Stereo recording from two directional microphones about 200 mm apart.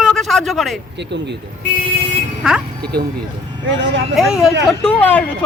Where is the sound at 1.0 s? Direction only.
60° right (ahead or behind).